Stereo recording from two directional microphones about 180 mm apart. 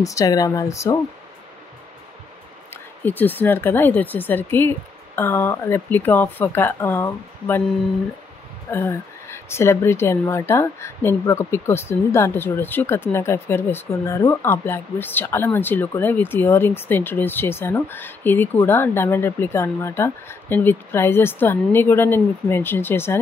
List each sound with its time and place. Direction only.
0.0 s speech: 20° left (ahead or behind)
2.7 s speech: 10° left (ahead or behind)
8.6 s speech: 15° left (ahead or behind)